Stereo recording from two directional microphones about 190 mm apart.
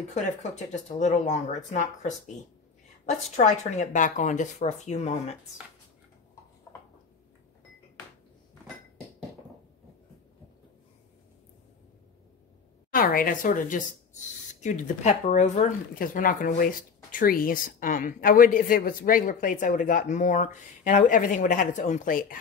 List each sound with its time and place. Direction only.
0.1 s speech: 40° left (ahead or behind)
3.3 s speech: 40° left (ahead or behind)
12.9 s speech: 50° left (ahead or behind)